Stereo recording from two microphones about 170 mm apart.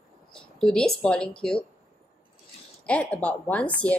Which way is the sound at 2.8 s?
5° left (ahead or behind).